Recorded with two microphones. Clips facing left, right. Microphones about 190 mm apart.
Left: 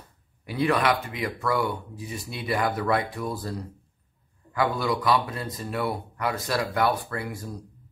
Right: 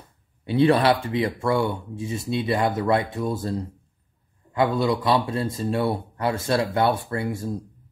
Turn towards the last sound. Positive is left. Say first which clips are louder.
# right 6 dB
turn(degrees=-25)  # may be behind; listen again after turning